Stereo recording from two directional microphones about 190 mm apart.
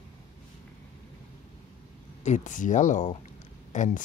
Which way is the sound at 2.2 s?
40° left (ahead or behind).